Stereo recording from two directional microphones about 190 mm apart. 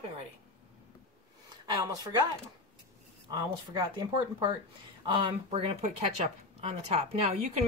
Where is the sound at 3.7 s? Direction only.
20° right (ahead or behind).